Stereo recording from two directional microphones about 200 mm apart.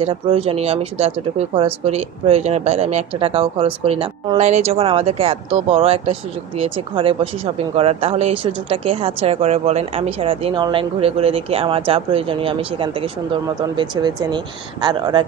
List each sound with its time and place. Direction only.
0.0 s speech: 30° right (ahead or behind)